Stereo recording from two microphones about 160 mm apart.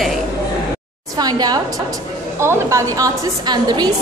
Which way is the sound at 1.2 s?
25° right (ahead or behind).